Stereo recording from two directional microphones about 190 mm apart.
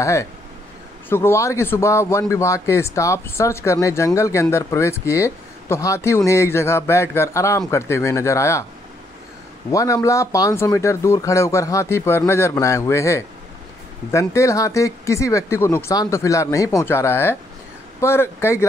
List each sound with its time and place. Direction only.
0.0 s speech: 15° left (ahead or behind)
9.7 s speech: 15° left (ahead or behind)